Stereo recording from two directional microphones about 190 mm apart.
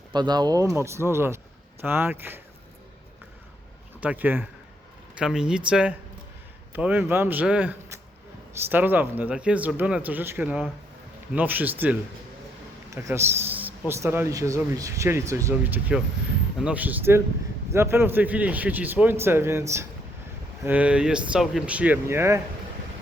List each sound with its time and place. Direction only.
0.1 s a man's voice: 20° right (ahead or behind)
4.0 s a man's voice: 10° right (ahead or behind)